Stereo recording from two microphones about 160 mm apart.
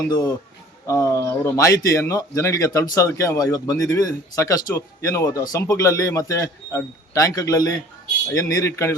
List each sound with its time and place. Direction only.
0.1 s a man's voice: 20° left (ahead or behind)